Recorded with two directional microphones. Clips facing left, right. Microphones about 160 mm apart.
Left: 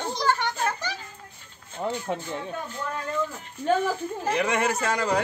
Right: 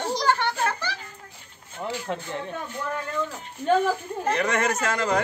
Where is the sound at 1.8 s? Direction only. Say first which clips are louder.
Left 2 dB; 25° left (ahead or behind).